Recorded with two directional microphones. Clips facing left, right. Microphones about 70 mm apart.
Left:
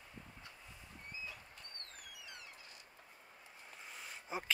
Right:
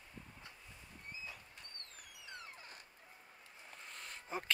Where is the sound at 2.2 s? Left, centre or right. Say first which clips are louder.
Right 3 dB; right.